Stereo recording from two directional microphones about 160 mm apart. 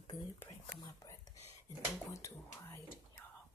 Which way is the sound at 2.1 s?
15° left (ahead or behind).